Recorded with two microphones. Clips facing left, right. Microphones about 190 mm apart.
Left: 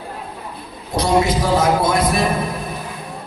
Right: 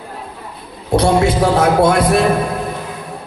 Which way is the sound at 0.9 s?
65° right (ahead or behind).